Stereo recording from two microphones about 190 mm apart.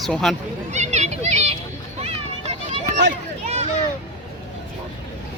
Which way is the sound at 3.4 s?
35° right (ahead or behind).